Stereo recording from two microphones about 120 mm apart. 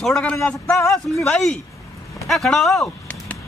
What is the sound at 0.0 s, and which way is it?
A man's voice, 5° left (ahead or behind).